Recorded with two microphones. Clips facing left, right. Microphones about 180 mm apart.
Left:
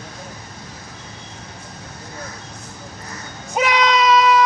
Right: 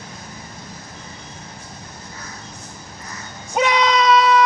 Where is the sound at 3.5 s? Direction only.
Centre (ahead or behind).